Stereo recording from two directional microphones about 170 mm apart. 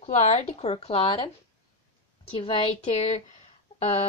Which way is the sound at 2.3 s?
30° left (ahead or behind).